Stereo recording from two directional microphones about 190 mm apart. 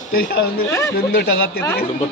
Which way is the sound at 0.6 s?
15° left (ahead or behind).